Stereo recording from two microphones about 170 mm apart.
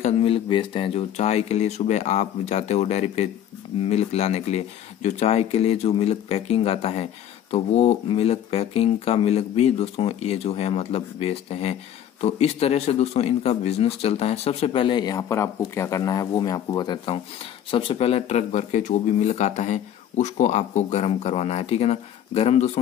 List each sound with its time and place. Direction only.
0.0 s speech: 35° left (ahead or behind)